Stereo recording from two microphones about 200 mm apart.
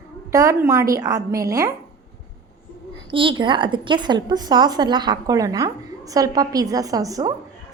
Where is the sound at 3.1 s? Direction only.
25° right (ahead or behind).